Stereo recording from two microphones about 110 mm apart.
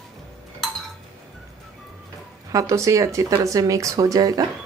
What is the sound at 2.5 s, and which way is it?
Speech, 30° right (ahead or behind).